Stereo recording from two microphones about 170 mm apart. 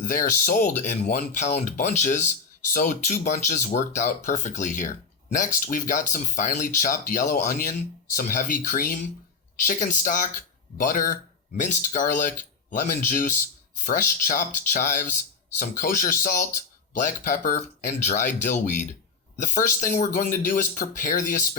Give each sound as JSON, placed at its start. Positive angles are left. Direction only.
{"t": 0.0, "sound": "speech", "side_deg": 50}